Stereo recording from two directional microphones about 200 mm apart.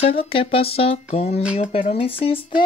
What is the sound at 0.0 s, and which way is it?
Speech, 30° left (ahead or behind).